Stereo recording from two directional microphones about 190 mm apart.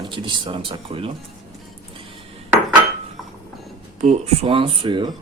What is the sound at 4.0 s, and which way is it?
Speech, 35° right (ahead or behind).